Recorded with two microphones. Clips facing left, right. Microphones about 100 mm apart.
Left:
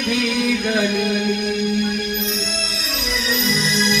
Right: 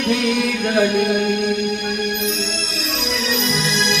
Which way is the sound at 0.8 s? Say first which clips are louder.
Right 3 dB; 50° right (ahead or behind).